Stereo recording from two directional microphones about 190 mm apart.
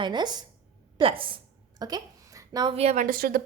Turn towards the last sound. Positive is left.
turn(degrees=-50)  # may be behind; listen again after turning